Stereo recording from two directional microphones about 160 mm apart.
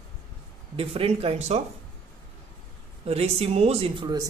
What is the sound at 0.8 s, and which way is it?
Speech, 35° right (ahead or behind).